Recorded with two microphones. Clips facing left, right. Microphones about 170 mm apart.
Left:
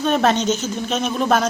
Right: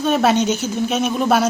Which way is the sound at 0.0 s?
5° right (ahead or behind).